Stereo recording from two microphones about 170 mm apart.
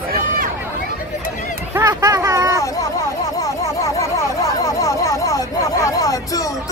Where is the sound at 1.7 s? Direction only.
20° right (ahead or behind).